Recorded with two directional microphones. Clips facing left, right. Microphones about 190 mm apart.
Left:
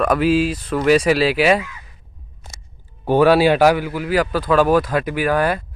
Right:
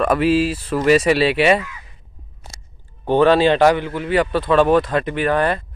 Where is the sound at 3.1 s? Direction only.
10° left (ahead or behind).